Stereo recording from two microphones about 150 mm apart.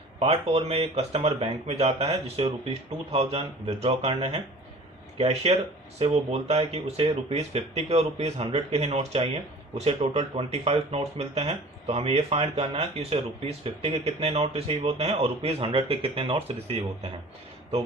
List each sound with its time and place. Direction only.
0.2 s speech: 40° right (ahead or behind)